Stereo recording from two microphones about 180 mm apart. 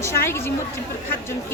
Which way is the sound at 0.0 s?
15° left (ahead or behind).